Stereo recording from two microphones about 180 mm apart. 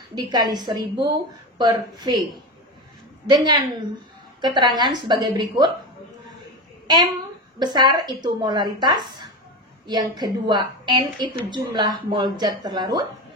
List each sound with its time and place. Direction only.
0.1 s a woman's voice: 25° right (ahead or behind)
3.3 s a woman's voice: 20° right (ahead or behind)
7.5 s a woman's voice: 25° right (ahead or behind)